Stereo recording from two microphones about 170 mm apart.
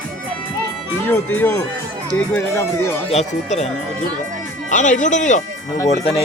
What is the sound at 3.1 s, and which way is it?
Speech, 40° left (ahead or behind).